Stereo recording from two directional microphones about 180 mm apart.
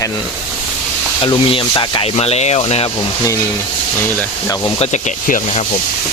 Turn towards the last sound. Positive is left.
turn(degrees=45)  # may be behind; listen again after turning